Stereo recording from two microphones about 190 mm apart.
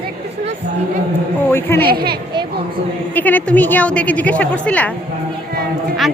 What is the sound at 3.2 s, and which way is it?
A woman's voice, 10° left (ahead or behind).